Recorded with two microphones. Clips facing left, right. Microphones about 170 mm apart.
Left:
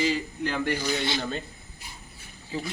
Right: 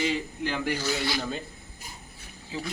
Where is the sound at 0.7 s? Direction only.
20° left (ahead or behind).